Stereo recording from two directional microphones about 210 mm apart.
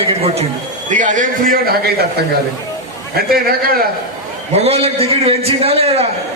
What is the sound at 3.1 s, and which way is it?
Speech, 45° right (ahead or behind).